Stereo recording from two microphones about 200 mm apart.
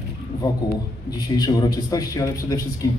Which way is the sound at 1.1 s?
20° left (ahead or behind).